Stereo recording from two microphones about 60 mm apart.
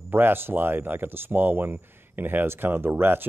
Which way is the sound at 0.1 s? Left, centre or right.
Right.